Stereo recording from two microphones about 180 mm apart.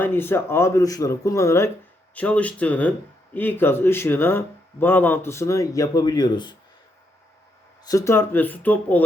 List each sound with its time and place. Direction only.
0.0 s speech: 10° left (ahead or behind)
7.9 s speech: 15° left (ahead or behind)